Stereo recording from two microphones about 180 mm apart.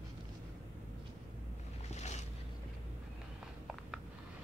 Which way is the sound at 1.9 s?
40° left (ahead or behind).